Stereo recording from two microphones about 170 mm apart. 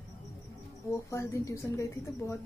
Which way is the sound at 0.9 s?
15° left (ahead or behind).